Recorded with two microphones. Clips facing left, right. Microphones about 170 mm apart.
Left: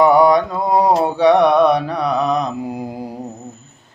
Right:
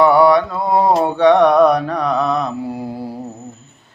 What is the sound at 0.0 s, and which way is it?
Mantra, 15° left (ahead or behind).